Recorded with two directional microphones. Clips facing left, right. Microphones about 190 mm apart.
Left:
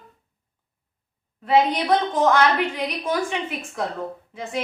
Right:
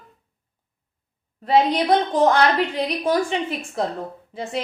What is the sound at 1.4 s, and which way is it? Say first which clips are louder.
A woman's voice: right 1 dB; 35° right (ahead or behind).